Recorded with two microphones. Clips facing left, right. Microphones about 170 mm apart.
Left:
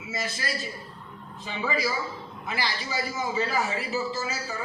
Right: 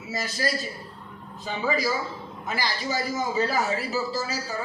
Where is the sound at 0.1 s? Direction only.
40° right (ahead or behind).